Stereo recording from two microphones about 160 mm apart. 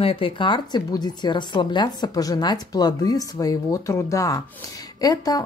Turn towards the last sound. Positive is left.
turn(degrees=25)  # may be behind; listen again after turning